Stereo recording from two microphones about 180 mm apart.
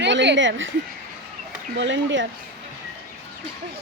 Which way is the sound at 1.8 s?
90° right.